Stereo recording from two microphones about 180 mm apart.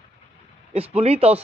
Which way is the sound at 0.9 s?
35° right (ahead or behind).